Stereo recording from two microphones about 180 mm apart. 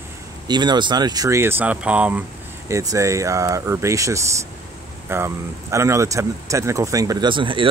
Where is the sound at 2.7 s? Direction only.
15° right (ahead or behind).